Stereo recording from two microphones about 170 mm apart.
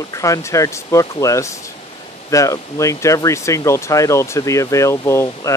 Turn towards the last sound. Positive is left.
turn(degrees=15)  # may be behind; listen again after turning